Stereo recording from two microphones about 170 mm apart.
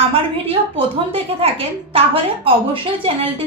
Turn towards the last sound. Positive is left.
turn(degrees=-30)  # may be behind; listen again after turning